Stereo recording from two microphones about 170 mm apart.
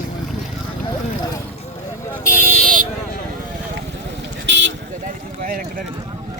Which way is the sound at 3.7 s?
90° right.